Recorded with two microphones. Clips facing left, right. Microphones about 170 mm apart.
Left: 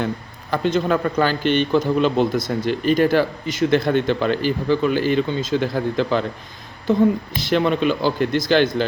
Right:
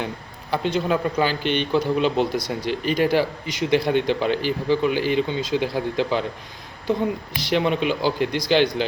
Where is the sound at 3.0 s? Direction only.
10° right (ahead or behind).